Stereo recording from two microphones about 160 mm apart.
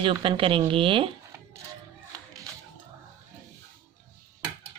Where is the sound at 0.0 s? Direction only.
35° right (ahead or behind).